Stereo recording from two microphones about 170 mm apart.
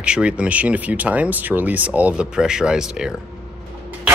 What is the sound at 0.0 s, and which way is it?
Speech, 5° right (ahead or behind).